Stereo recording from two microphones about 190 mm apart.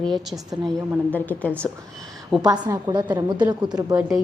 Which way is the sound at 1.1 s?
10° left (ahead or behind).